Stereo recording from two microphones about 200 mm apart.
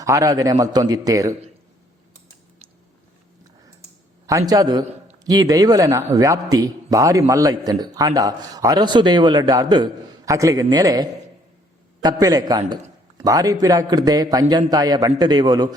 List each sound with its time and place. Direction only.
0.0 s a man's voice: 15° right (ahead or behind)
4.3 s a man's voice: 15° right (ahead or behind)
12.2 s a man's voice: 20° right (ahead or behind)